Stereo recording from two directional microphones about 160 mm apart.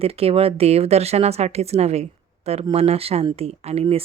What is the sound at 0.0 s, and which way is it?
Speech, 40° right (ahead or behind).